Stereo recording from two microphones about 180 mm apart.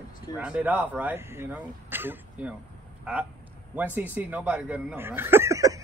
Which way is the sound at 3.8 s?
10° right (ahead or behind).